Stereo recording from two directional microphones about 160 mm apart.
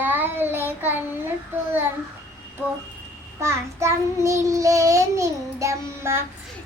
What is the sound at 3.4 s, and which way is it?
Child singing, 15° right (ahead or behind).